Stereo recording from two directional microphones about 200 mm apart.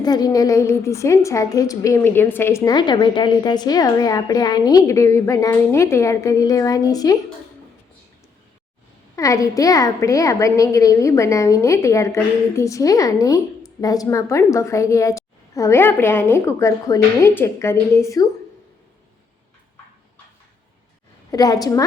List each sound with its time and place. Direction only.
0.0 s a woman's voice: 20° left (ahead or behind)
9.1 s a woman's voice: 15° left (ahead or behind)
21.2 s a woman's voice: 20° left (ahead or behind)